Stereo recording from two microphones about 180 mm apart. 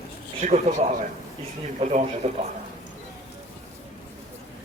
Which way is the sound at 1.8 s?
35° right (ahead or behind).